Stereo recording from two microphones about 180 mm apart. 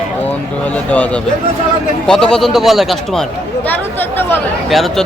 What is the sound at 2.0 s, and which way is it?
Speech, 5° left (ahead or behind).